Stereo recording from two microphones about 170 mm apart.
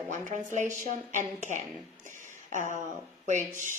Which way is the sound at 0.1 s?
45° right (ahead or behind).